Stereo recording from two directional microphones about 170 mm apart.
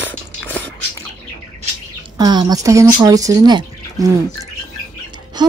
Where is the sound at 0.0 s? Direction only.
10° left (ahead or behind).